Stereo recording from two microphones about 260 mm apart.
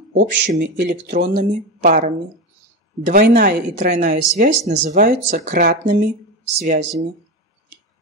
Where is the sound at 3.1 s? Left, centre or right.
Right.